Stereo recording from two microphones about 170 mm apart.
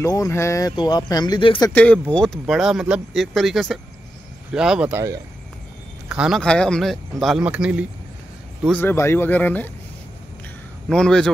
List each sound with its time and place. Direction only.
0.0 s speech: 20° left (ahead or behind)
1.7 s speech: 10° left (ahead or behind)
6.0 s speech: 5° right (ahead or behind)
8.6 s speech: 10° left (ahead or behind)
10.9 s speech: 5° left (ahead or behind)